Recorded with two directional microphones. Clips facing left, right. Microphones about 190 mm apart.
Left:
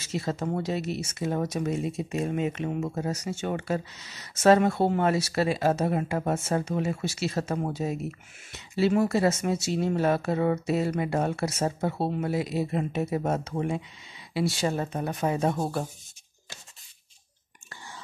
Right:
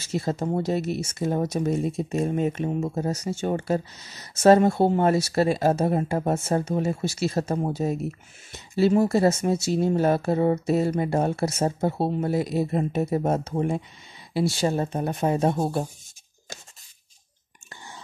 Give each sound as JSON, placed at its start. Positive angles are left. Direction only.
{"t": 0.0, "sound": "speech", "side_deg": -40}
{"t": 2.8, "sound": "speech", "side_deg": -30}